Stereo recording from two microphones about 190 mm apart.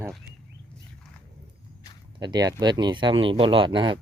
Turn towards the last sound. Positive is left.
turn(degrees=-25)  # may be behind; listen again after turning